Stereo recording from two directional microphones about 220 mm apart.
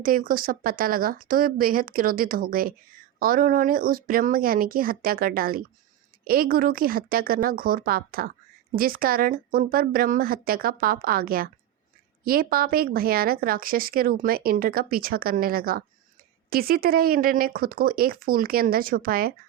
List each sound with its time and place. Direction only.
0.0 s a woman's voice: 40° right (ahead or behind)